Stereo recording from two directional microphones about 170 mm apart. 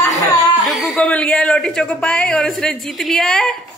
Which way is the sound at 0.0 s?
20° left (ahead or behind).